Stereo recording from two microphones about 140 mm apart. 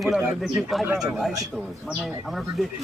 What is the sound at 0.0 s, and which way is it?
Speech, centre (ahead or behind).